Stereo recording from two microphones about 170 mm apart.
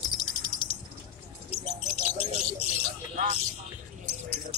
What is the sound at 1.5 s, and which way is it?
Bird, 35° left (ahead or behind).